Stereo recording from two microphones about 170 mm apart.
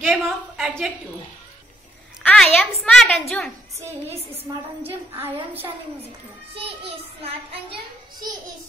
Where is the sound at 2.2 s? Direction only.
5° left (ahead or behind).